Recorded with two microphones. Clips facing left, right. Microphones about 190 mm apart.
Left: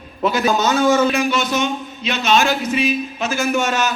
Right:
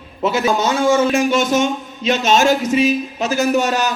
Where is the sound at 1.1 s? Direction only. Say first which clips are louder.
Right 4 dB; 45° right (ahead or behind).